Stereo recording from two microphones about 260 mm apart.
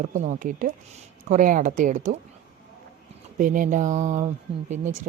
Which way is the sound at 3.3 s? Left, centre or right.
Right.